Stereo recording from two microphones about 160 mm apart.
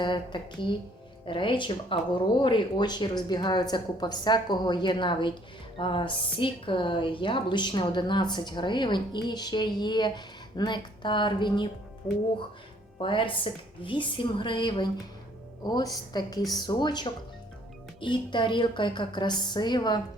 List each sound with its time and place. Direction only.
0.0 s a woman's voice: 30° left (ahead or behind)
13.0 s a woman's voice: 30° left (ahead or behind)